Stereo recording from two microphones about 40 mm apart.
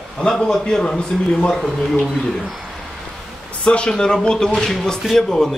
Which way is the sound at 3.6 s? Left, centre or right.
Left.